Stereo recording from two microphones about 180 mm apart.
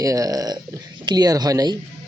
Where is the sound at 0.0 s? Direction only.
20° right (ahead or behind).